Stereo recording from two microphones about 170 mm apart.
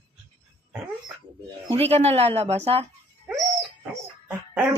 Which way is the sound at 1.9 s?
40° right (ahead or behind).